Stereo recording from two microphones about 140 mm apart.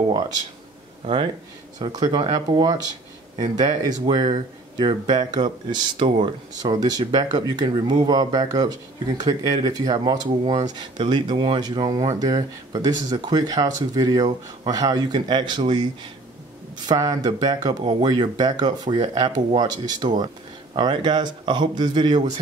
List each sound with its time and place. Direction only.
1.0 s speech: 40° right (ahead or behind)